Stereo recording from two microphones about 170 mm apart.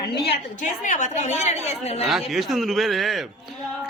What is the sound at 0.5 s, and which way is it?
A woman's voice, 50° left (ahead or behind).